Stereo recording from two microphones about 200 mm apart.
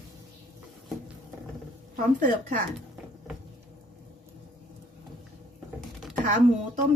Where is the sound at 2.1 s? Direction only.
40° right (ahead or behind).